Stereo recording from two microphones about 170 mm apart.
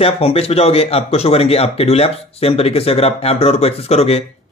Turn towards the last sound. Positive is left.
turn(degrees=35)  # may be behind; listen again after turning